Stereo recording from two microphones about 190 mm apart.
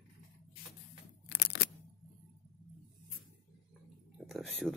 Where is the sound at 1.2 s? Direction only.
60° left (ahead or behind).